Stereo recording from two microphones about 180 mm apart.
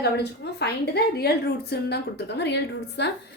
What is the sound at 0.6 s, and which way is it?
A woman's voice, 65° left (ahead or behind).